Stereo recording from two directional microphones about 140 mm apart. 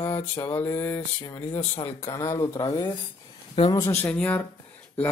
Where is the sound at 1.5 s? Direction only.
50° left (ahead or behind).